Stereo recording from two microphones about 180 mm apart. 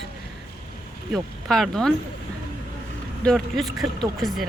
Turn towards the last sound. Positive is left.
turn(degrees=0)  # may be behind; listen again after turning